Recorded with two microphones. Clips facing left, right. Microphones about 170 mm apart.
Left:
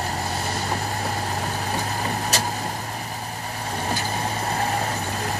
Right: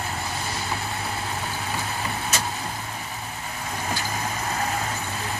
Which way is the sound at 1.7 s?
35° left (ahead or behind).